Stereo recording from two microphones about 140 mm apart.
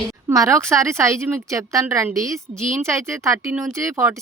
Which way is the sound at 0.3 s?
20° right (ahead or behind).